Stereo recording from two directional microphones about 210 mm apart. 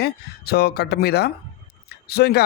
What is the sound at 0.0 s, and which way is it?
Speech, 50° left (ahead or behind).